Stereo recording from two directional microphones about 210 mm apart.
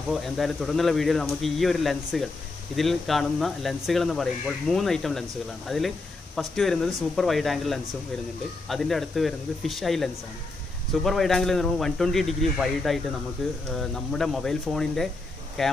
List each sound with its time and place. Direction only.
0.1 s speech: centre (ahead or behind)